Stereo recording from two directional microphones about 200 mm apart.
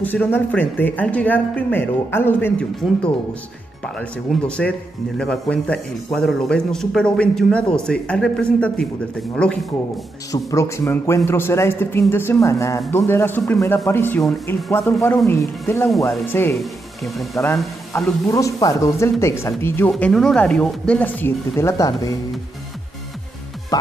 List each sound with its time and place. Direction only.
0.0 s speech: 10° left (ahead or behind)
3.8 s speech: 5° left (ahead or behind)
10.3 s speech: 15° left (ahead or behind)
17.0 s speech: centre (ahead or behind)
17.9 s speech: 15° left (ahead or behind)
19.9 s speech: centre (ahead or behind); by 22.1 s 15° left (ahead or behind)
23.7 s music: 20° left (ahead or behind)